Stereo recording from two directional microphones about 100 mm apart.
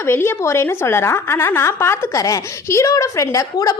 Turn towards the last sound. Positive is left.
turn(degrees=35)  # may be behind; listen again after turning